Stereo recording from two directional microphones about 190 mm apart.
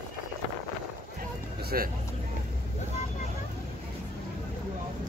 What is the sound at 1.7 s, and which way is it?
Speech, 55° right (ahead or behind).